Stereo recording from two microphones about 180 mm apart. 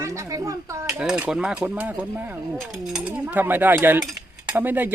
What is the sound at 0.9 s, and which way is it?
Speech, 5° right (ahead or behind).